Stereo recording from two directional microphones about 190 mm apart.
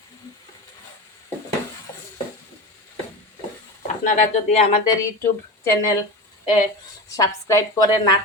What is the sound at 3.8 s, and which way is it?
Speech, 40° left (ahead or behind).